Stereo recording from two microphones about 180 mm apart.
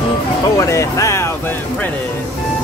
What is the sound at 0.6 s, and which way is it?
Speech, 15° left (ahead or behind).